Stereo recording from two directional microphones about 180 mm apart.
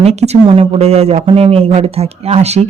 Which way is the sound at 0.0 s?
35° right (ahead or behind).